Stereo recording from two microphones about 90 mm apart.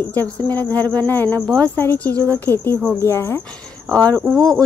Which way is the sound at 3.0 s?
30° left (ahead or behind).